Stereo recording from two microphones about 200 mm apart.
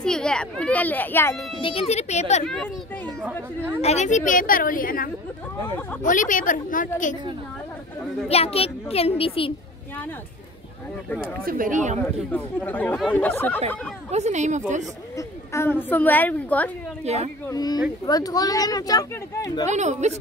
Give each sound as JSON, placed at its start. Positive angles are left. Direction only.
{"t": 0.0, "sound": "a sound", "side_deg": 5}
{"t": 1.6, "sound": "speech", "side_deg": 30}
{"t": 2.4, "sound": "speech", "side_deg": 5}
{"t": 3.8, "sound": "a woman's voice", "side_deg": 35}
{"t": 8.3, "sound": "speech", "side_deg": 30}
{"t": 11.4, "sound": "speech", "side_deg": -45}
{"t": 12.0, "sound": "speech", "side_deg": 10}
{"t": 14.1, "sound": "speech", "side_deg": -35}
{"t": 15.1, "sound": "speech", "side_deg": 15}
{"t": 17.0, "sound": "speech", "side_deg": -30}
{"t": 17.5, "sound": "speech", "side_deg": 20}
{"t": 19.7, "sound": "speech", "side_deg": -35}